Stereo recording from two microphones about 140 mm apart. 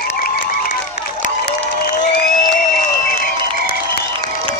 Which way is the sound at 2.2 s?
90° left.